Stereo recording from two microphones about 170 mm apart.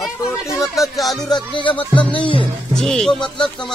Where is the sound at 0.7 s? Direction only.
Centre (ahead or behind).